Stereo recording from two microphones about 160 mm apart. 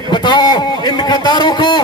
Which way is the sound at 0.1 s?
30° left (ahead or behind).